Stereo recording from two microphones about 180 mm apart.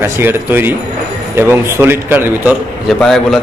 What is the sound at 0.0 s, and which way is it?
A man's voice, 10° right (ahead or behind).